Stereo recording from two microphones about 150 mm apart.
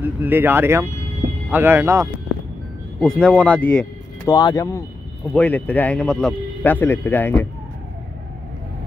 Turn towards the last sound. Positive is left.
turn(degrees=15)  # may be behind; listen again after turning